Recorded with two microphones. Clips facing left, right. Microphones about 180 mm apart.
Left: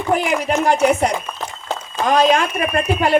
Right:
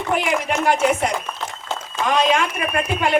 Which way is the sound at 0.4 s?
35° left (ahead or behind).